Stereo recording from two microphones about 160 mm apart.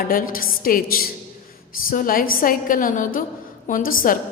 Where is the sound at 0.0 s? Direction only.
60° left (ahead or behind).